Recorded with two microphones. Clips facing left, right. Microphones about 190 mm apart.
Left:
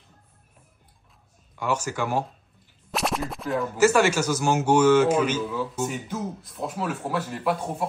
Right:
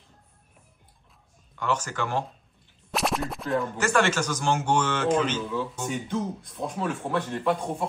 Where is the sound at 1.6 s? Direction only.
10° left (ahead or behind).